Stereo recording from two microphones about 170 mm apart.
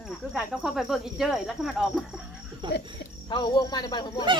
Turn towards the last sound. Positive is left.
turn(degrees=25)  # may be behind; listen again after turning